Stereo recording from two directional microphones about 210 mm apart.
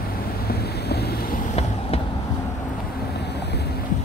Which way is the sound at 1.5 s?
30° left (ahead or behind).